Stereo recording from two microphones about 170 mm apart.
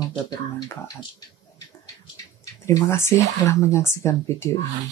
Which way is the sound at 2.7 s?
15° left (ahead or behind).